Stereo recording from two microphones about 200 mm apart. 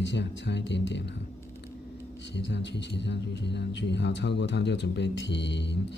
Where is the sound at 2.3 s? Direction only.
60° left (ahead or behind).